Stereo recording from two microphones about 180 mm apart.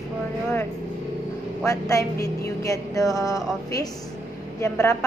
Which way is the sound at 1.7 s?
15° left (ahead or behind).